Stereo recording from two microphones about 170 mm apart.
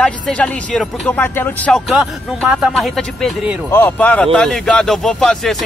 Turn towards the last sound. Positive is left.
turn(degrees=5)  # may be behind; listen again after turning